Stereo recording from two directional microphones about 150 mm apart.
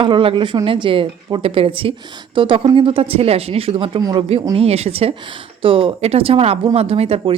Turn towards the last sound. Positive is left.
turn(degrees=-40)  # may be behind; listen again after turning